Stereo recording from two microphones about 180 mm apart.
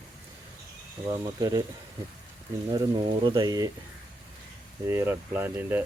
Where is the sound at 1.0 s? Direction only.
20° right (ahead or behind).